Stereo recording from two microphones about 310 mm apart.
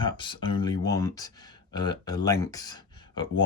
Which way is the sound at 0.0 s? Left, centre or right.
Centre.